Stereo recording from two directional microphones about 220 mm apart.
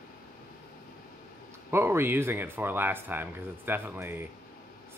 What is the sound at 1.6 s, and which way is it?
Speech, 10° right (ahead or behind).